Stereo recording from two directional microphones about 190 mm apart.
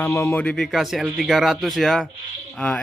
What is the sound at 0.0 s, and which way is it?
A man's voice, 15° left (ahead or behind).